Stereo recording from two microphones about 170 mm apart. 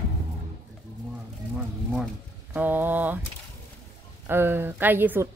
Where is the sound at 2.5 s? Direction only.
10° right (ahead or behind).